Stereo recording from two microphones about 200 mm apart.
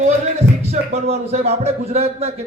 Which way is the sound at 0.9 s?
35° right (ahead or behind).